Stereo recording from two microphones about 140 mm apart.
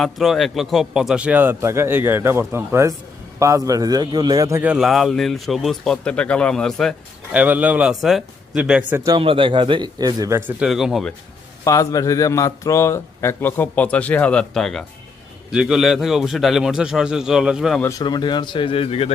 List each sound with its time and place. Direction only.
0.0 s a man's voice: centre (ahead or behind); by 4.6 s 25° right (ahead or behind)
4.6 s speech: 5° right (ahead or behind)
7.3 s speech: 10° right (ahead or behind)
9.0 s a man's voice: 35° right (ahead or behind); by 10.5 s 20° right (ahead or behind)
10.6 s speech: 5° right (ahead or behind)
11.6 s a man's voice: 25° left (ahead or behind); by 17.7 s 5° right (ahead or behind)
18.0 s speech: 30° left (ahead or behind)